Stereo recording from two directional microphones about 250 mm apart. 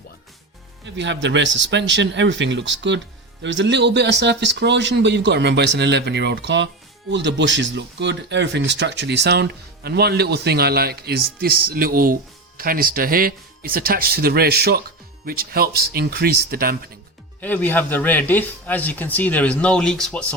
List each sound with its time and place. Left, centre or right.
0.9 s speech: right
17.4 s speech: centre